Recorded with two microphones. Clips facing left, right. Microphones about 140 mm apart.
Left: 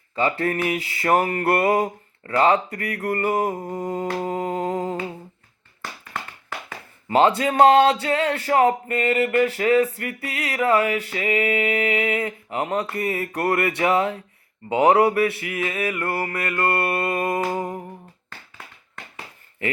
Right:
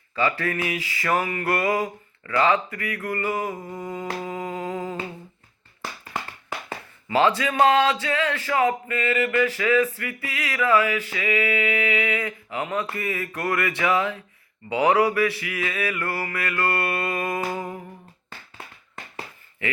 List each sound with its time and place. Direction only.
0.2 s a sound: 25° left (ahead or behind)
0.4 s speech: 45° left (ahead or behind)
3.3 s humming: 40° left (ahead or behind)
7.2 s speech: 35° left (ahead or behind)
14.8 s a sound: 30° left (ahead or behind)
16.9 s music: 25° left (ahead or behind)